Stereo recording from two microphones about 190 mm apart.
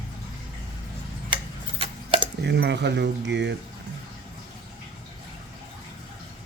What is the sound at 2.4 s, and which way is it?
Speech, 60° right (ahead or behind).